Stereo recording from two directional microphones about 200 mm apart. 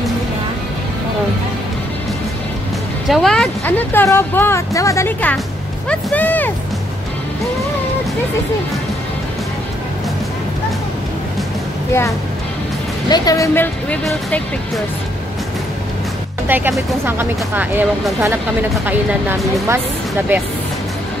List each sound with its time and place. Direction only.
3.1 s speech: centre (ahead or behind)
13.1 s speech: 20° left (ahead or behind)
16.4 s speech: 10° right (ahead or behind)